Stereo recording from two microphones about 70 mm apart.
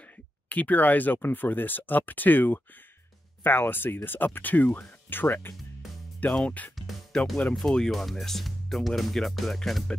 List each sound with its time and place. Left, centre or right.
0.5 s speech: left
6.3 s music: centre
7.5 s speech: centre